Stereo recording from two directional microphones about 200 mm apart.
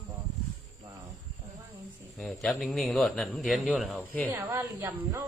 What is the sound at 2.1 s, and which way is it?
Speech, centre (ahead or behind).